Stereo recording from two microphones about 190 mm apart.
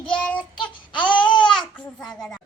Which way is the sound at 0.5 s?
25° left (ahead or behind).